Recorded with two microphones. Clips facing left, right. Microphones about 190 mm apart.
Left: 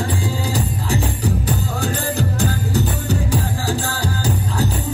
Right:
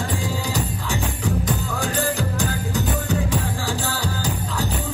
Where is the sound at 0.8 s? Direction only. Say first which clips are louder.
Left 4 dB; 35° left (ahead or behind).